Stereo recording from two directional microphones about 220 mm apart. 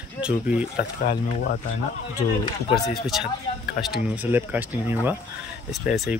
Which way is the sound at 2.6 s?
15° left (ahead or behind).